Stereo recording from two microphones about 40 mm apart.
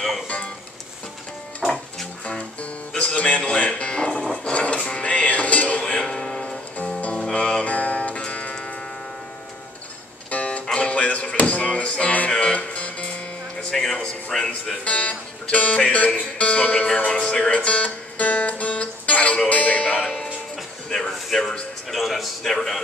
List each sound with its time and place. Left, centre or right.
2.2 s music: left
3.0 s speech: left
4.1 s music: centre
4.5 s music: left
5.9 s a sound: left
7.0 s music: left
10.3 s music: left
12.3 s music: left
12.5 s music: left
13.7 s a man's voice: centre
14.9 s speech: left
15.8 s music: left
20.9 s a sound: centre
21.9 s a man's voice: centre